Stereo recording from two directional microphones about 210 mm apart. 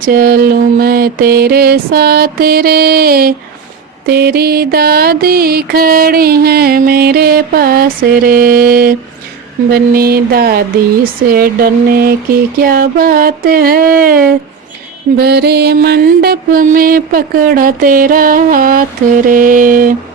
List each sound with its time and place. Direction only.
0.1 s mantra: 45° right (ahead or behind)
15.2 s music: 50° right (ahead or behind)